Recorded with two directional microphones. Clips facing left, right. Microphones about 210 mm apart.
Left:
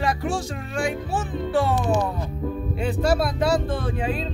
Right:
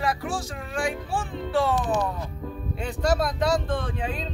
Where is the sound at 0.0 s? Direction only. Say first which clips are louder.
Left 3 dB; 25° left (ahead or behind).